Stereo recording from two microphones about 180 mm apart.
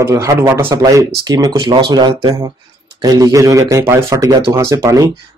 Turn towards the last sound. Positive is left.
turn(degrees=-15)  # may be behind; listen again after turning